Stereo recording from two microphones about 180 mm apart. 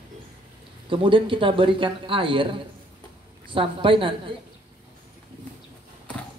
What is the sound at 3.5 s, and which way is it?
Speech, 30° right (ahead or behind).